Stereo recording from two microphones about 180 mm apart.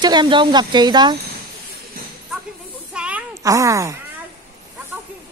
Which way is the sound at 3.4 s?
20° right (ahead or behind).